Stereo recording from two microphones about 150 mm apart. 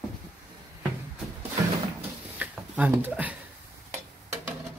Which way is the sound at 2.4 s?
10° right (ahead or behind).